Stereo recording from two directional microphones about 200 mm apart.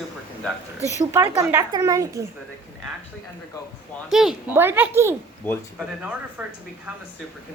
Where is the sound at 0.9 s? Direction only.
15° right (ahead or behind).